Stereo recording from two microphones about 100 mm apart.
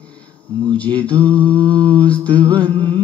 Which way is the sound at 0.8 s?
15° left (ahead or behind).